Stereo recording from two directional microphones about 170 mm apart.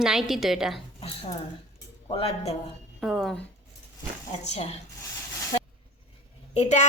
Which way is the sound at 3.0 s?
Centre (ahead or behind).